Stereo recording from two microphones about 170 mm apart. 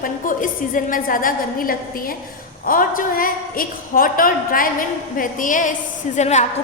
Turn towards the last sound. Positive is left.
turn(degrees=45)  # may be behind; listen again after turning